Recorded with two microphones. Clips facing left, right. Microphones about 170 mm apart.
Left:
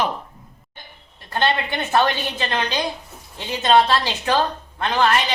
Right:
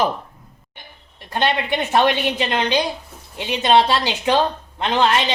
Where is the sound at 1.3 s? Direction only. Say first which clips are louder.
Right 1 dB; 15° right (ahead or behind).